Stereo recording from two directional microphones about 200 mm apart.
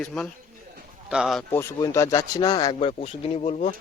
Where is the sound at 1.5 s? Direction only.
15° left (ahead or behind); by 3.8 s 35° left (ahead or behind).